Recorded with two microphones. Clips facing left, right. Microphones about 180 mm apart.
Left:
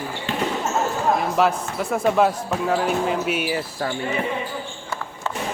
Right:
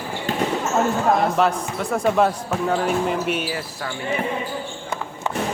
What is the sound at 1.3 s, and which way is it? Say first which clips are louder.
Speech: even; 5° left (ahead or behind).